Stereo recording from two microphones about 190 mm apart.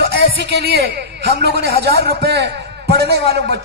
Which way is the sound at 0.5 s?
55° right (ahead or behind).